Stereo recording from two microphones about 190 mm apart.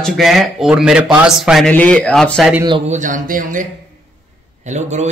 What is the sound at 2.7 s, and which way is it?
Speech, 30° right (ahead or behind).